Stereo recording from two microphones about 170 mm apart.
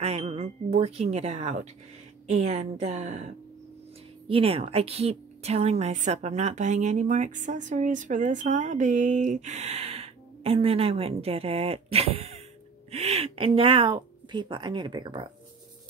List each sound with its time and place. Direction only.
0.0 s a woman's voice: 35° right (ahead or behind)
4.3 s a woman's voice: 35° right (ahead or behind)